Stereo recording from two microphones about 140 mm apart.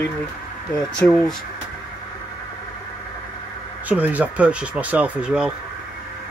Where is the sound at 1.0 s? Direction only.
5° left (ahead or behind).